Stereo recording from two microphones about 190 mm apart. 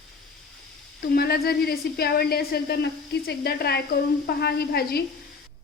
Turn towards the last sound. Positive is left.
turn(degrees=55)  # may be behind; listen again after turning